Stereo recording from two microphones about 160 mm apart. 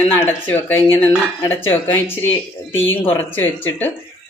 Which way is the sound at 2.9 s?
15° left (ahead or behind).